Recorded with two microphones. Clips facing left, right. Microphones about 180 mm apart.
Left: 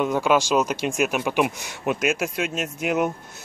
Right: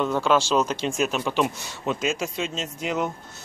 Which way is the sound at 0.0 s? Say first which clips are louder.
Left 1 dB; 10° left (ahead or behind).